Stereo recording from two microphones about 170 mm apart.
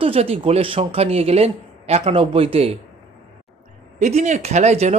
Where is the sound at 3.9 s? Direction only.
45° right (ahead or behind).